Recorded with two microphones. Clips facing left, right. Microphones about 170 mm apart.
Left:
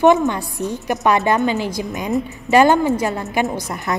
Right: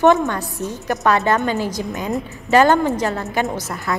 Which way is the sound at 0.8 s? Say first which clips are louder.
Even; 15° left (ahead or behind).